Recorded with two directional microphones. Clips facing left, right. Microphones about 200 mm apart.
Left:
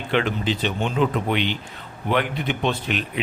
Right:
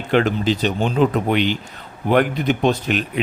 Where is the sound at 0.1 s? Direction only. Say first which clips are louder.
Right 5 dB; 40° right (ahead or behind).